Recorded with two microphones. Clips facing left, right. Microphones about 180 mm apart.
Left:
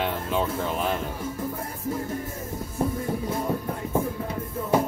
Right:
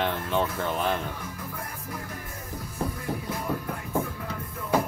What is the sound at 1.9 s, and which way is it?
Music, 25° left (ahead or behind).